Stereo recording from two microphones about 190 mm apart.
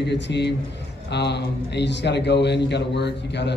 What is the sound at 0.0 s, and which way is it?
Speech, 65° left (ahead or behind).